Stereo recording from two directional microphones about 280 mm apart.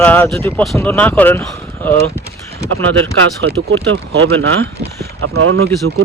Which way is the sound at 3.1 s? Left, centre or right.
Right.